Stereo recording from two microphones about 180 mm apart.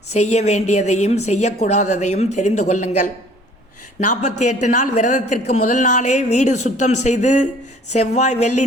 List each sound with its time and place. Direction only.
0.1 s a woman's voice: 40° left (ahead or behind)